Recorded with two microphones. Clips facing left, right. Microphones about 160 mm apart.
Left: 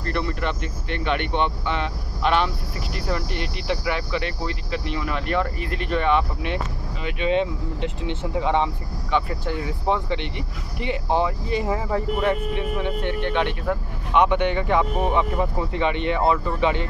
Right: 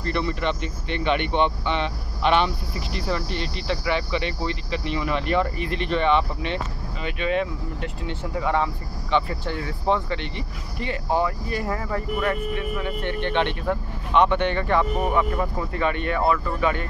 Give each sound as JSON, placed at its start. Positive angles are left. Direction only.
{"t": 0.1, "sound": "speech", "side_deg": 0}
{"t": 7.2, "sound": "speech", "side_deg": 25}
{"t": 9.1, "sound": "speech", "side_deg": 10}
{"t": 13.1, "sound": "speech", "side_deg": 5}